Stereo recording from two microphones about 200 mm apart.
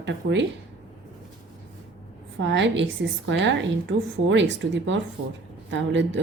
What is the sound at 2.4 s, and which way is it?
A woman's voice, 65° right (ahead or behind).